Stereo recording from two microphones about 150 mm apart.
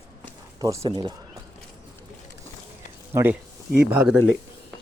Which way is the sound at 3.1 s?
15° right (ahead or behind).